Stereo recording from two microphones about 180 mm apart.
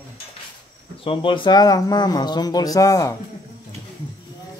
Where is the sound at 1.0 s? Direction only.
30° left (ahead or behind).